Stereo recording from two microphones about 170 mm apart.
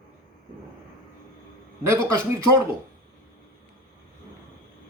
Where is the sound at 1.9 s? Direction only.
15° right (ahead or behind).